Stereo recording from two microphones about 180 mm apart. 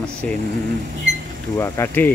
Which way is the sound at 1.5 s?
15° left (ahead or behind).